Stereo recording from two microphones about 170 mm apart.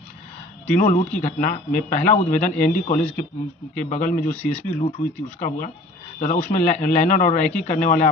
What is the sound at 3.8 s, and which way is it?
Speech, 50° left (ahead or behind).